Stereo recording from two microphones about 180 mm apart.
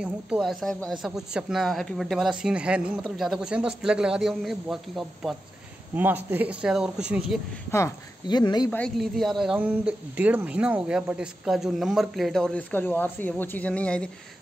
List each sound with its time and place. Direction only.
0.0 s speech: 5° right (ahead or behind)
7.7 s speech: 20° left (ahead or behind)
8.6 s speech: 5° left (ahead or behind)